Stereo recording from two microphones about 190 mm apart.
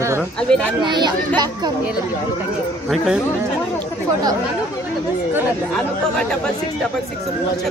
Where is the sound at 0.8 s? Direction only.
25° right (ahead or behind).